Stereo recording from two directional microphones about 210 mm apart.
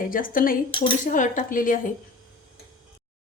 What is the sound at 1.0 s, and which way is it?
Speech, 40° left (ahead or behind).